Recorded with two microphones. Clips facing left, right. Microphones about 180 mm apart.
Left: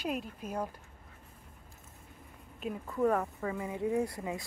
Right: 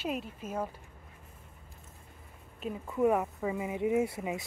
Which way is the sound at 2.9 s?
10° right (ahead or behind).